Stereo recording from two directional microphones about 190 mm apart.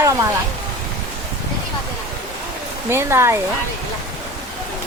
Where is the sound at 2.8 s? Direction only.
15° right (ahead or behind).